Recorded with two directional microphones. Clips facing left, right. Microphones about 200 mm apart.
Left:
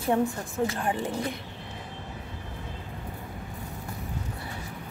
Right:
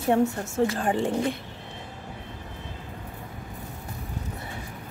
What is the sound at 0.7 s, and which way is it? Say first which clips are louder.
Speech: right 3 dB; 30° right (ahead or behind).